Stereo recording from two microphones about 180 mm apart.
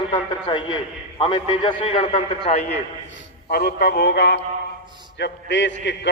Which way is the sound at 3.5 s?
60° left (ahead or behind).